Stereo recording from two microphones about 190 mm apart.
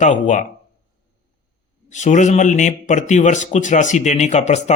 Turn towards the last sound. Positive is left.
turn(degrees=35)  # may be behind; listen again after turning